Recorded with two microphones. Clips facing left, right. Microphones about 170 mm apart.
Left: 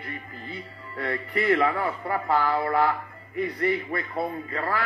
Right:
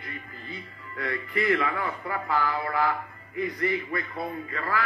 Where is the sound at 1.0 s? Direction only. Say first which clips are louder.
Left 2 dB; 30° left (ahead or behind).